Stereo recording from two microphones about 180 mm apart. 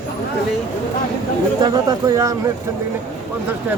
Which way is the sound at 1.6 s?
20° right (ahead or behind).